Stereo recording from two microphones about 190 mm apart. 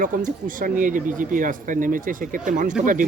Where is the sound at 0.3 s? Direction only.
45° right (ahead or behind).